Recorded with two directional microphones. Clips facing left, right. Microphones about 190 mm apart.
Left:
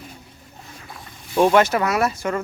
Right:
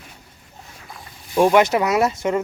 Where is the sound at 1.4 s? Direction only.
15° right (ahead or behind).